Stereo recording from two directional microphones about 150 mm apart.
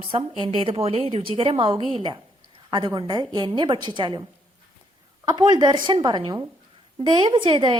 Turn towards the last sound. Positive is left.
turn(degrees=-30)  # may be behind; listen again after turning